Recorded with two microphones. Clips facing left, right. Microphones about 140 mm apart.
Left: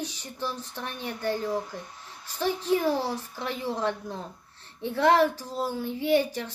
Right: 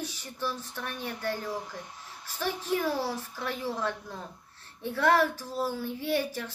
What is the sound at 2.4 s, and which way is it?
A woman's voice, 20° left (ahead or behind).